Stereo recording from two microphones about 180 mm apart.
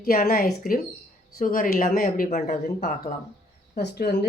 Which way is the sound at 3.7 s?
65° left (ahead or behind).